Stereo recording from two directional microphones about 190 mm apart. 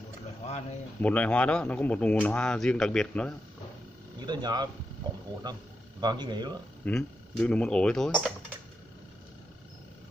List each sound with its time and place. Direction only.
0.5 s a sound: 35° left (ahead or behind)
1.0 s speech: 10° left (ahead or behind)
4.3 s speech: 20° right (ahead or behind)
6.8 s speech: 5° left (ahead or behind)